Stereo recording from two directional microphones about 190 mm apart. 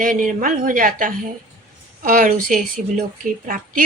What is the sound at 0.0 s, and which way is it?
A woman's voice, 45° right (ahead or behind).